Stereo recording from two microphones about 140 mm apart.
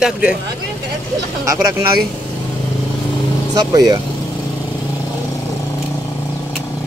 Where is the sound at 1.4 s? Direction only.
20° right (ahead or behind).